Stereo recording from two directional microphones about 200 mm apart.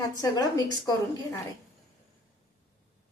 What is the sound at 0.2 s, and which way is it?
A woman's voice, 15° left (ahead or behind).